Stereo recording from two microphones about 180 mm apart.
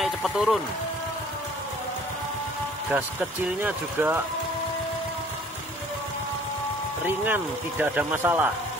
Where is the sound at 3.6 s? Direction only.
10° right (ahead or behind).